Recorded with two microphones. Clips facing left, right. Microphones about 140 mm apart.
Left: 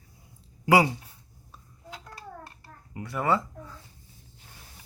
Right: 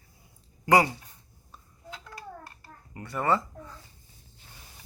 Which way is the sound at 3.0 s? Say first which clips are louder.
Even; 5° left (ahead or behind).